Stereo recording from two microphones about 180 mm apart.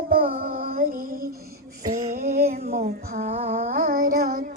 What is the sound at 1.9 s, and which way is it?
Female singing, 35° right (ahead or behind).